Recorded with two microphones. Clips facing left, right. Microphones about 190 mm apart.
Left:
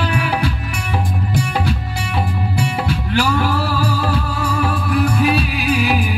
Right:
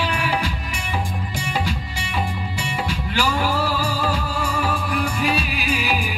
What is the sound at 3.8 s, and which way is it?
Music, 65° left (ahead or behind).